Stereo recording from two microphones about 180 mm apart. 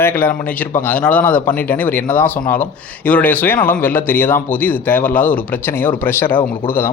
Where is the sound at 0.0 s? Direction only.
10° left (ahead or behind).